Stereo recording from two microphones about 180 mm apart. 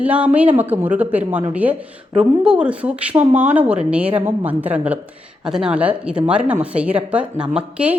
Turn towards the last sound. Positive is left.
turn(degrees=-5)  # may be behind; listen again after turning